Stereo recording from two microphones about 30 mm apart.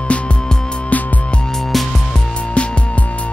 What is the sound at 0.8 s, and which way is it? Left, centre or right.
Music, left.